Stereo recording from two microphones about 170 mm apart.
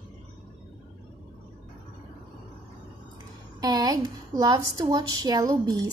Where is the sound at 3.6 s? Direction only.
20° right (ahead or behind).